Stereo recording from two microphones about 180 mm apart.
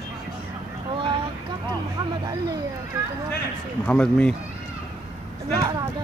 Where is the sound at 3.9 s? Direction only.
5° left (ahead or behind).